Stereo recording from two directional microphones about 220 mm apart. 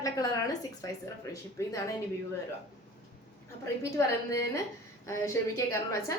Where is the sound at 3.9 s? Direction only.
15° left (ahead or behind).